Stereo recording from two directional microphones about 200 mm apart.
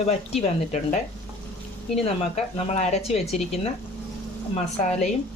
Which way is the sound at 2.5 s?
30° left (ahead or behind).